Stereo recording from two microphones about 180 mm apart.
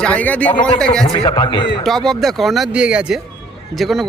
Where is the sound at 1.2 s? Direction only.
25° left (ahead or behind).